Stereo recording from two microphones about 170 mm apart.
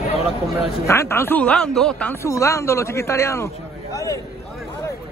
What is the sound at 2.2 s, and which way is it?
A man's voice, 15° left (ahead or behind).